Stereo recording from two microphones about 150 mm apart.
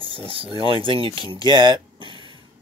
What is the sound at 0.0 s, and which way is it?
Speech, 35° right (ahead or behind).